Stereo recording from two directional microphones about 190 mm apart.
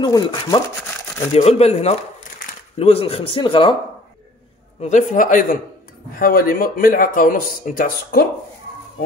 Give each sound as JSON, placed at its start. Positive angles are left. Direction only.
{"t": 0.0, "sound": "speech", "side_deg": 20}
{"t": 1.3, "sound": "speech", "side_deg": 35}
{"t": 4.8, "sound": "speech", "side_deg": 40}